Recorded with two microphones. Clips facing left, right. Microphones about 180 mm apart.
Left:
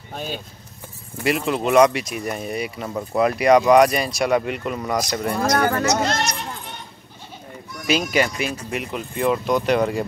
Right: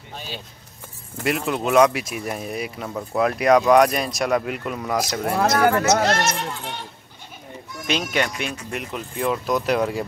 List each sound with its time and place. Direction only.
0.1 s vehicle: 50° left (ahead or behind)
1.2 s speech: centre (ahead or behind)
5.3 s speech: 70° right (ahead or behind)
7.8 s speech: 5° left (ahead or behind)